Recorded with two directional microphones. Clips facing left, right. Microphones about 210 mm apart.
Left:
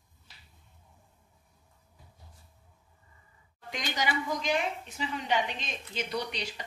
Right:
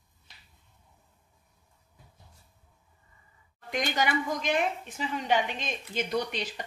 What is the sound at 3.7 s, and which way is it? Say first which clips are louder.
A woman's voice: right 4 dB; 50° right (ahead or behind).